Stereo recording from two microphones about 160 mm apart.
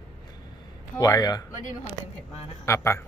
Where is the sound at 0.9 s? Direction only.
20° left (ahead or behind).